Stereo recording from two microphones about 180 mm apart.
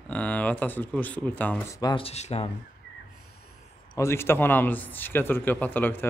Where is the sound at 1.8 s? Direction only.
25° left (ahead or behind).